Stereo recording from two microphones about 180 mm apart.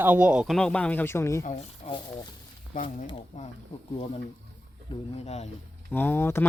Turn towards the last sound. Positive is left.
turn(degrees=10)  # may be behind; listen again after turning